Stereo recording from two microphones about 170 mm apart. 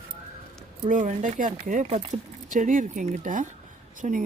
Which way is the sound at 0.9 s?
50° right (ahead or behind).